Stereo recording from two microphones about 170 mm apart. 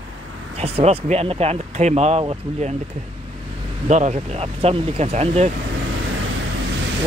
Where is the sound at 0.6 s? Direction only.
40° right (ahead or behind).